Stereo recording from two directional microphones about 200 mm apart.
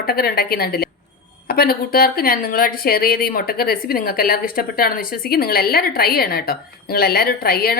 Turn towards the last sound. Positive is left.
turn(degrees=50)  # may be behind; listen again after turning